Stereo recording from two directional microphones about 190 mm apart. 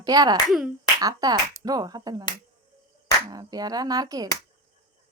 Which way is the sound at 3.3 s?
20° right (ahead or behind).